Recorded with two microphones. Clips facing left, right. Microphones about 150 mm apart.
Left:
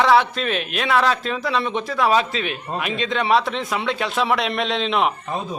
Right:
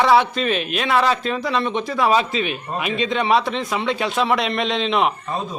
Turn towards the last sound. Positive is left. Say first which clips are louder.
# right 1 dB
turn(degrees=0)  # may be behind; listen again after turning